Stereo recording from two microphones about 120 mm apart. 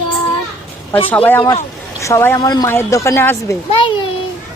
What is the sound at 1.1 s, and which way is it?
A woman's voice, 15° left (ahead or behind).